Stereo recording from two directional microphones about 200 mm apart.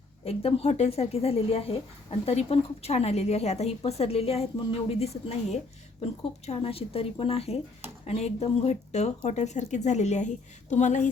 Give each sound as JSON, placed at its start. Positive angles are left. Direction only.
{"t": 0.3, "sound": "a woman's voice", "side_deg": 30}